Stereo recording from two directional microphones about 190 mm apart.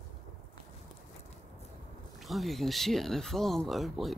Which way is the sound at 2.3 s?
Centre (ahead or behind).